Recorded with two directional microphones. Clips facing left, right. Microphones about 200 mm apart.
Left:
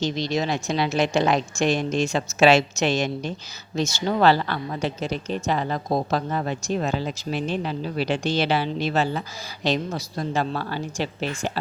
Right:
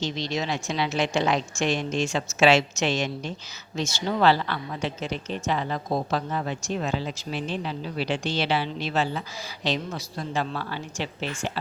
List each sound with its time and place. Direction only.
0.0 s a woman's voice: 40° left (ahead or behind)